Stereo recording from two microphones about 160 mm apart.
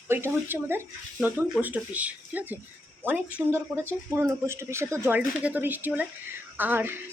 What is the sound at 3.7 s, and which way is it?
A woman's voice, 15° right (ahead or behind).